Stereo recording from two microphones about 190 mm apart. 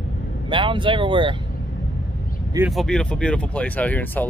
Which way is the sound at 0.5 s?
25° right (ahead or behind).